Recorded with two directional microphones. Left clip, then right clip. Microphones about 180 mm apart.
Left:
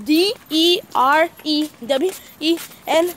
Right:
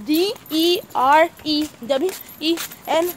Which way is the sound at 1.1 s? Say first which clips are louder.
Right 1 dB; 20° left (ahead or behind).